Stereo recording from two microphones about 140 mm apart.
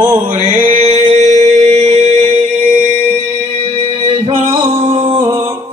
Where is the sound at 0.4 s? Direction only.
45° right (ahead or behind).